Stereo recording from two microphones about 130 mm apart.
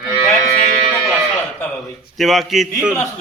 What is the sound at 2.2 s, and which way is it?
Speech, centre (ahead or behind).